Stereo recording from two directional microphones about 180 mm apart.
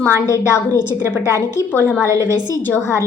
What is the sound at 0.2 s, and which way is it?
Speech, 15° left (ahead or behind).